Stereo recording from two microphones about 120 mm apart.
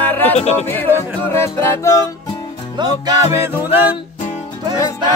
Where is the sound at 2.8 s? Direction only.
35° right (ahead or behind).